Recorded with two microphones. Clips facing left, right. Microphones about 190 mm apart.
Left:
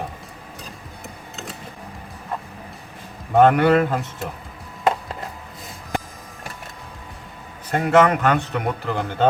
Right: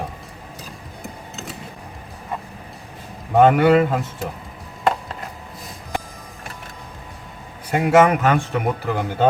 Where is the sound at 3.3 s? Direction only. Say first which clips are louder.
Right 1 dB; centre (ahead or behind).